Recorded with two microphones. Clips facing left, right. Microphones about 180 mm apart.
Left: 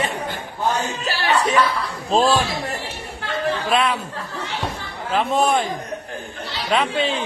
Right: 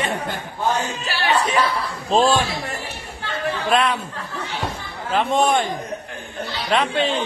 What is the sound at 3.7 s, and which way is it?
Speech, centre (ahead or behind).